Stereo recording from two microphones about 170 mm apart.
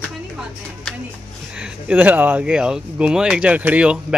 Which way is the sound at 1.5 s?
5° right (ahead or behind).